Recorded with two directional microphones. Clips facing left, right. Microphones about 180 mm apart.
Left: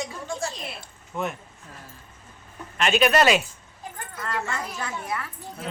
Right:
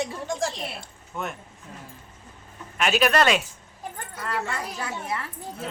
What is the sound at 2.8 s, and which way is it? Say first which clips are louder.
Speech: left 1 dB; 5° right (ahead or behind).